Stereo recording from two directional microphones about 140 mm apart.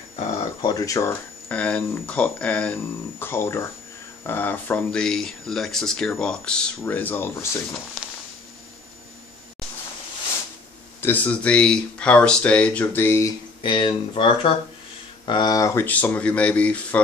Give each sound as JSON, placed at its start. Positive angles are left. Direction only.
{"t": 0.7, "sound": "speech", "side_deg": 25}
{"t": 1.5, "sound": "speech", "side_deg": 10}
{"t": 5.0, "sound": "speech", "side_deg": 5}
{"t": 11.0, "sound": "speech", "side_deg": 10}
{"t": 13.6, "sound": "speech", "side_deg": 35}
{"t": 15.2, "sound": "speech", "side_deg": 30}